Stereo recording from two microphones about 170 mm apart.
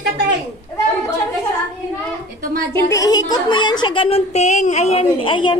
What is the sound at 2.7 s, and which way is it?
A woman's voice, 20° left (ahead or behind).